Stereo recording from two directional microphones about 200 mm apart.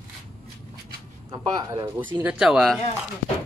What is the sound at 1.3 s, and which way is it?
Speech, 20° right (ahead or behind).